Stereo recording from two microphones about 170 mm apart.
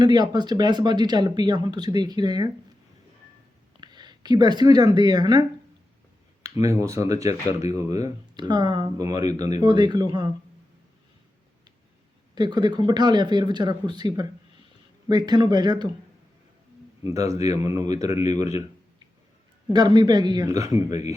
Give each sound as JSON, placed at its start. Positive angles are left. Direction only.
{"t": 0.0, "sound": "speech", "side_deg": -25}
{"t": 3.8, "sound": "speech", "side_deg": -25}
{"t": 6.4, "sound": "speech", "side_deg": -15}
{"t": 12.3, "sound": "speech", "side_deg": -25}
{"t": 17.1, "sound": "speech", "side_deg": -20}
{"t": 18.1, "sound": "speech", "side_deg": 40}
{"t": 19.7, "sound": "speech", "side_deg": -25}
{"t": 20.7, "sound": "speech", "side_deg": 40}